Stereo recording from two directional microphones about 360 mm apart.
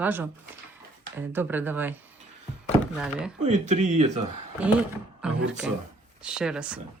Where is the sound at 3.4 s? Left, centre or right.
Centre.